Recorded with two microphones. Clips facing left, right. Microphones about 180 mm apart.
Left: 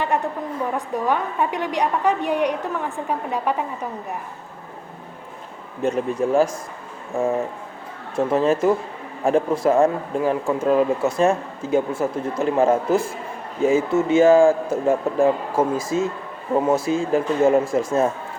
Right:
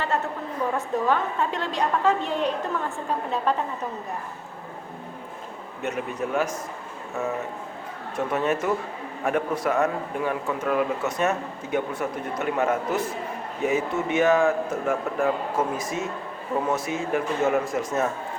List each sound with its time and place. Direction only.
0.1 s a woman's voice: 15° left (ahead or behind)
5.8 s speech: 30° left (ahead or behind)